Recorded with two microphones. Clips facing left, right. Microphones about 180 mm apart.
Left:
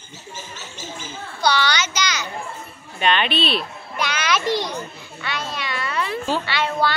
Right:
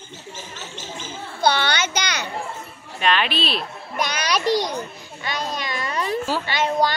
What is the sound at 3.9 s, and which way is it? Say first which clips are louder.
Music: even; 40° right (ahead or behind).